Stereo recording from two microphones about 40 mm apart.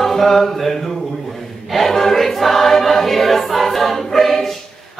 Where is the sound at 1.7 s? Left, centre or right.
Centre.